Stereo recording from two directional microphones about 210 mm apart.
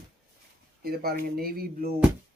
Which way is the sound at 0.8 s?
45° right (ahead or behind).